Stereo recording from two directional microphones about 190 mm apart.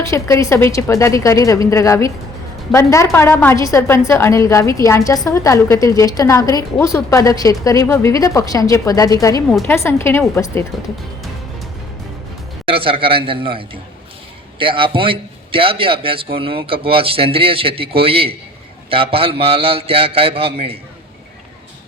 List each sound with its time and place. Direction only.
0.0 s a woman's voice: 15° left (ahead or behind)
12.6 s a man's voice: 30° right (ahead or behind)